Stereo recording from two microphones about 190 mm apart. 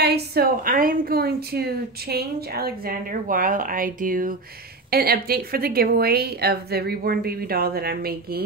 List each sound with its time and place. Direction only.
0.0 s a woman's voice: 60° right (ahead or behind)